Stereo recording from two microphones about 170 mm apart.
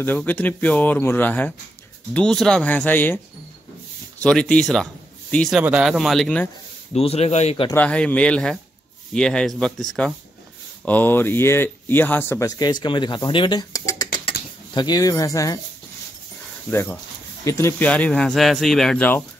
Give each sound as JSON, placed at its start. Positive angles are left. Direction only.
{"t": 0.0, "sound": "speech", "side_deg": 10}
{"t": 4.2, "sound": "speech", "side_deg": 5}
{"t": 5.6, "sound": "speech", "side_deg": -5}
{"t": 6.9, "sound": "speech", "side_deg": 35}
{"t": 7.7, "sound": "speech", "side_deg": 5}
{"t": 16.7, "sound": "speech", "side_deg": 10}